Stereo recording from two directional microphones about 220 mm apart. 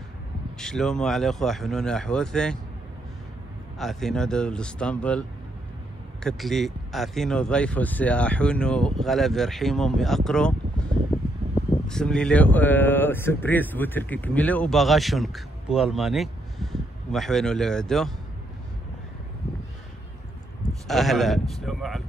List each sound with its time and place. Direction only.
0.6 s speech: 5° left (ahead or behind)
3.7 s speech: centre (ahead or behind)
6.2 s speech: centre (ahead or behind)
11.9 s speech: 5° left (ahead or behind)
20.8 s speech: centre (ahead or behind)